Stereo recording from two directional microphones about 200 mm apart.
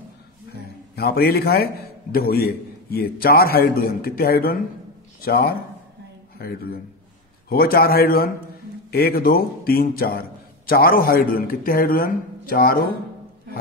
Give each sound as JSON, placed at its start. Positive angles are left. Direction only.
{"t": 0.9, "sound": "a man's voice", "side_deg": 50}